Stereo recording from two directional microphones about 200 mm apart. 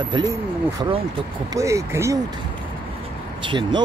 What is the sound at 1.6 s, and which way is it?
Speech, 15° right (ahead or behind).